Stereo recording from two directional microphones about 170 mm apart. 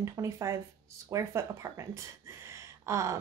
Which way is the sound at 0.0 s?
20° right (ahead or behind).